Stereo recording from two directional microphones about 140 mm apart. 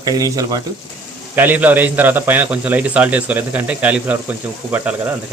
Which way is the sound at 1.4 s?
15° right (ahead or behind).